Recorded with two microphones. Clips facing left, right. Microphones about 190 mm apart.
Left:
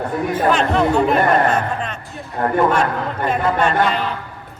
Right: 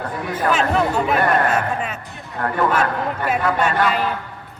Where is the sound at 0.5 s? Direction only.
5° right (ahead or behind).